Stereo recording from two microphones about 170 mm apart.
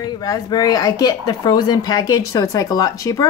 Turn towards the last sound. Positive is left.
turn(degrees=20)  # may be behind; listen again after turning